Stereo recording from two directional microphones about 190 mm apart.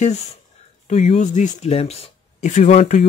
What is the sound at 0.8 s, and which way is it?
Speech, 35° left (ahead or behind).